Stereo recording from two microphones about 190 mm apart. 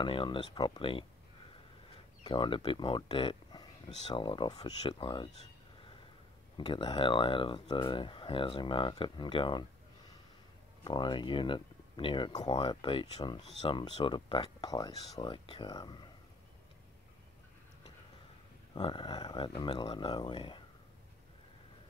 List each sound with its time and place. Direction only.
0.0 s speech: 25° left (ahead or behind)
2.2 s speech: 25° left (ahead or behind)
10.8 s speech: 25° left (ahead or behind)
18.8 s speech: 25° left (ahead or behind)